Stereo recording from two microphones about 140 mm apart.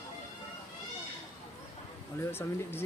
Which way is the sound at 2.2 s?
15° left (ahead or behind).